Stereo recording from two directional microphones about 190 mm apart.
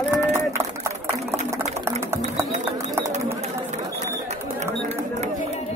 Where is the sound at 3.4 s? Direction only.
35° right (ahead or behind).